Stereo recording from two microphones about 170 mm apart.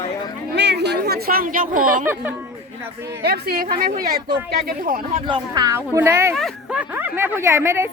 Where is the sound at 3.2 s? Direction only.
65° right (ahead or behind).